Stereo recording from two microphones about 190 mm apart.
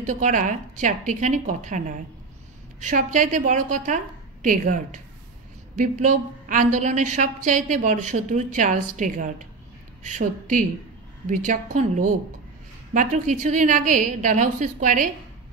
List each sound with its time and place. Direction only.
0.0 s a woman's voice: 40° right (ahead or behind)